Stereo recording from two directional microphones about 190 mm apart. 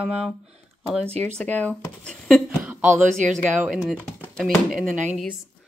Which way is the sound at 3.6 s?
5° right (ahead or behind).